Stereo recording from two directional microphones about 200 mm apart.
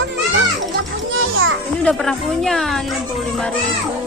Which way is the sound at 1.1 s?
80° right.